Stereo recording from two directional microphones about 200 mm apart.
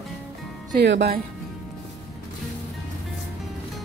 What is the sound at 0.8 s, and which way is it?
Speech, 55° right (ahead or behind).